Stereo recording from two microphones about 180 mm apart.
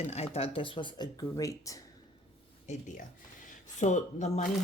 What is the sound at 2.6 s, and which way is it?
Speech, 40° left (ahead or behind).